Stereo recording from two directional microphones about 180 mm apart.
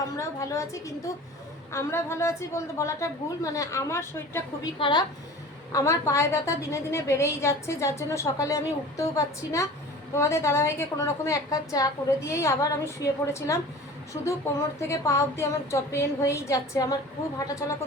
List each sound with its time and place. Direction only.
0.2 s a woman's voice: 15° left (ahead or behind)